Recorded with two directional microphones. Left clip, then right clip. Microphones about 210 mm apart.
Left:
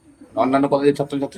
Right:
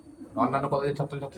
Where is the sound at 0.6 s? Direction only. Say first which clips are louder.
Left 11 dB; 40° left (ahead or behind).